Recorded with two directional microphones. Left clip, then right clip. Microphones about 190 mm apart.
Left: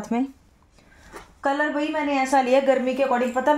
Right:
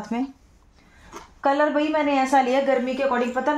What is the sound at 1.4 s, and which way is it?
Speech, centre (ahead or behind).